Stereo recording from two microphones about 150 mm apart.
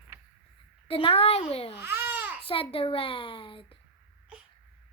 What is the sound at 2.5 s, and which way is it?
Speech, 40° left (ahead or behind).